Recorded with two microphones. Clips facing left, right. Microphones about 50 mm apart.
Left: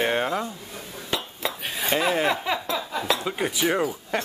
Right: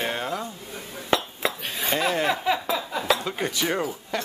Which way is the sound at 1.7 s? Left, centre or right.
Centre.